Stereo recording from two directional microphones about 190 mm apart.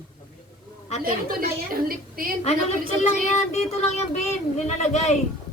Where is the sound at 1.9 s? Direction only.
50° right (ahead or behind).